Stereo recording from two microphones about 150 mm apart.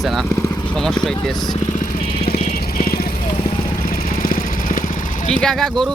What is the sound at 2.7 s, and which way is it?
Vehicle, 85° left.